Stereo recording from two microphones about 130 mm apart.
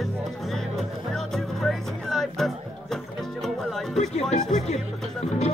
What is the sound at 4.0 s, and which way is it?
Music, 65° left (ahead or behind).